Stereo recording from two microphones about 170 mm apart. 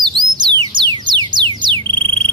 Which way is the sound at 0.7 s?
25° right (ahead or behind).